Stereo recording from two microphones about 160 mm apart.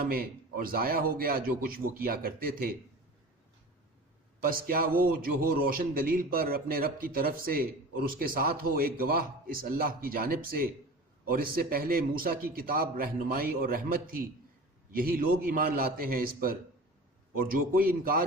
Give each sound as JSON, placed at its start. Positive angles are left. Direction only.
{"t": 0.0, "sound": "a man's voice", "side_deg": -65}
{"t": 4.4, "sound": "a man's voice", "side_deg": -65}